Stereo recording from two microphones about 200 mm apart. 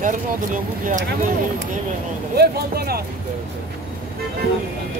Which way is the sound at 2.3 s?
50° right (ahead or behind).